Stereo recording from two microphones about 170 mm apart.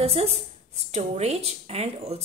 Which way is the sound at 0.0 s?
35° right (ahead or behind).